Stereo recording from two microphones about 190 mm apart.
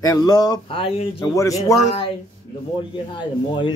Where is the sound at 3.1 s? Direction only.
25° left (ahead or behind).